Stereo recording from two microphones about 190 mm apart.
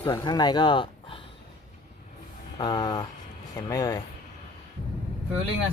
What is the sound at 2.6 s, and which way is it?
Speech, 25° left (ahead or behind).